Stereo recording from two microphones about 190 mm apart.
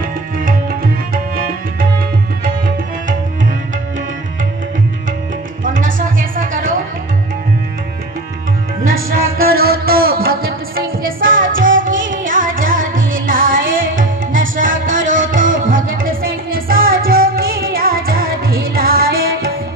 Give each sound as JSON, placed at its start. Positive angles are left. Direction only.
{"t": 1.1, "sound": "music", "side_deg": -50}
{"t": 5.6, "sound": "music", "side_deg": -45}
{"t": 9.1, "sound": "music", "side_deg": -50}